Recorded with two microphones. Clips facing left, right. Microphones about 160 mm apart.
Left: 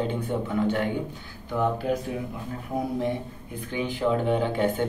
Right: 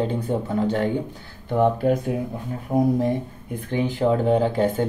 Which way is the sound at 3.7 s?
40° right (ahead or behind).